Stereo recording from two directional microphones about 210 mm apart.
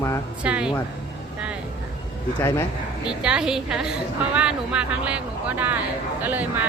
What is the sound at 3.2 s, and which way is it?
Speech, 5° right (ahead or behind).